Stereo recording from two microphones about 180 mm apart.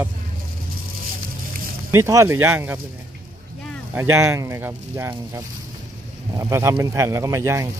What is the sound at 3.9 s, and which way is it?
Speech, 15° right (ahead or behind).